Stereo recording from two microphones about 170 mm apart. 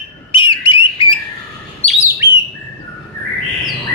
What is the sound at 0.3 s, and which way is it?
Bird, 30° left (ahead or behind).